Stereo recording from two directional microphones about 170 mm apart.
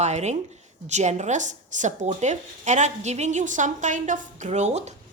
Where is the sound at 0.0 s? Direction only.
40° right (ahead or behind).